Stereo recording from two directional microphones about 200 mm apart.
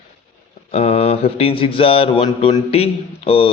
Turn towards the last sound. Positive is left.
turn(degrees=30)  # may be behind; listen again after turning